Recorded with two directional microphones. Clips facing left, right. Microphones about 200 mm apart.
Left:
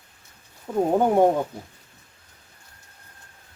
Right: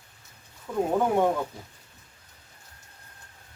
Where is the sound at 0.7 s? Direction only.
30° left (ahead or behind).